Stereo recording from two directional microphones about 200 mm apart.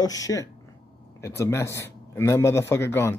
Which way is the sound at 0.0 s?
20° left (ahead or behind).